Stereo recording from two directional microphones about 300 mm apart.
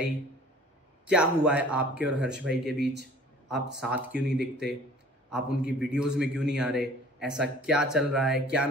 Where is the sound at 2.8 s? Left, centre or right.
Right.